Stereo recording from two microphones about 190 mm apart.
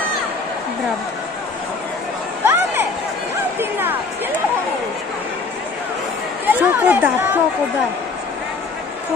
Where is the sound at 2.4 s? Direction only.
10° right (ahead or behind).